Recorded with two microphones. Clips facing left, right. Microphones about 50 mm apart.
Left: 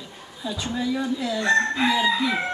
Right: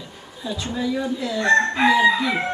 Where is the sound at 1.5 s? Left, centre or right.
Right.